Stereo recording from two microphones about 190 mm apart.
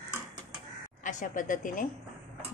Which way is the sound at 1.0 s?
40° left (ahead or behind).